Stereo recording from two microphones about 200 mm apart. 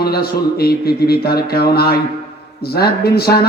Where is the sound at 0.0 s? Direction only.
50° left (ahead or behind).